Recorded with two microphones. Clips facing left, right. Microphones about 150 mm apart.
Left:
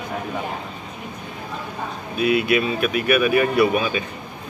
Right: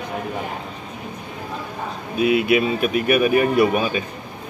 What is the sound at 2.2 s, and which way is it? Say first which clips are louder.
Speech: right 2 dB; 20° right (ahead or behind).